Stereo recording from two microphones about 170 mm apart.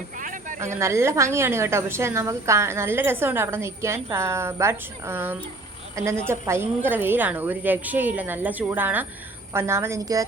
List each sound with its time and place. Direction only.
0.2 s speech: 50° right (ahead or behind)
0.6 s a woman's voice: 15° right (ahead or behind)